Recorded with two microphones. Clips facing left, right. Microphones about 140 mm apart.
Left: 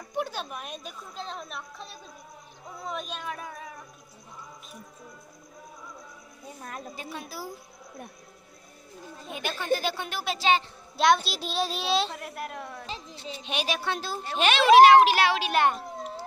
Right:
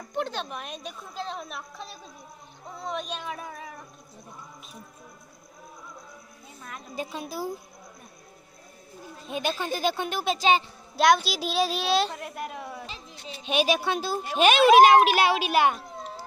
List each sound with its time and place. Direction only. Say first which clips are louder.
0.1 s a woman's voice: right 1 dB; 10° left (ahead or behind)
7.0 s speech: right 5 dB; 20° right (ahead or behind)
9.3 s speech: even; 20° right (ahead or behind)
11.0 s a woman's voice: right 2 dB; centre (ahead or behind)
13.5 s a woman's voice: right 6 dB; 15° right (ahead or behind)